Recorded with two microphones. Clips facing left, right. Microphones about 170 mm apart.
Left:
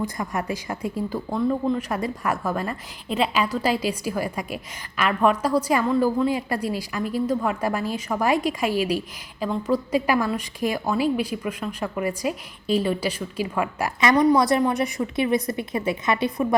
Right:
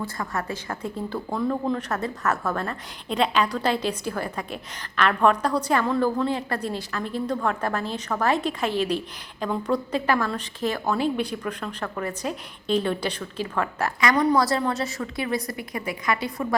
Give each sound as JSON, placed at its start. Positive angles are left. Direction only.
{"t": 0.0, "sound": "speech", "side_deg": 15}
{"t": 14.0, "sound": "a woman's voice", "side_deg": 25}